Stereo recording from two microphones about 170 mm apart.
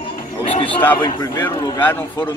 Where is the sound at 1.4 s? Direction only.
10° left (ahead or behind).